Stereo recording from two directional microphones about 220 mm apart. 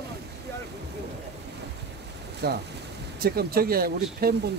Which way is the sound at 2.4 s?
45° right (ahead or behind).